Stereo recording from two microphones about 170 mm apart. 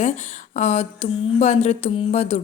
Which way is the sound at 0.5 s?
45° left (ahead or behind).